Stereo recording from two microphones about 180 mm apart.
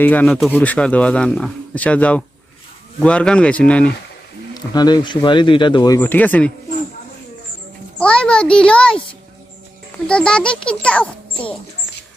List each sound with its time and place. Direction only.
0.0 s speech: 10° left (ahead or behind)
4.5 s speech: 20° left (ahead or behind)
7.9 s a child's voice: 5° left (ahead or behind)
10.1 s a child's voice: 5° left (ahead or behind)